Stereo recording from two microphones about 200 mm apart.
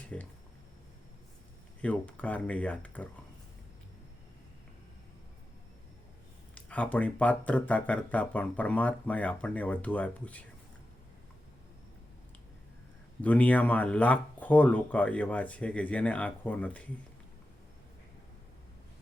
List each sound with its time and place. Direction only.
0.1 s speech: 5° left (ahead or behind)
1.8 s speech: 5° left (ahead or behind)
6.5 s speech: 5° left (ahead or behind)
13.2 s speech: 10° left (ahead or behind)